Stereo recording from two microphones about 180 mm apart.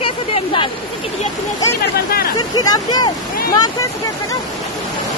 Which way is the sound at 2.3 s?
20° left (ahead or behind).